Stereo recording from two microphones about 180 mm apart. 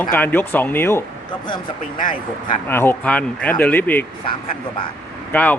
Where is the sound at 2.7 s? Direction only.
10° left (ahead or behind).